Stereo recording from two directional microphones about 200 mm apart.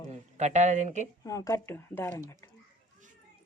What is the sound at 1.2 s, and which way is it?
Speech, 15° left (ahead or behind).